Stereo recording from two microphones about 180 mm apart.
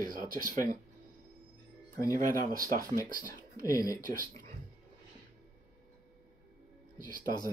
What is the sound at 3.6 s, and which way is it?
Speech, 20° left (ahead or behind).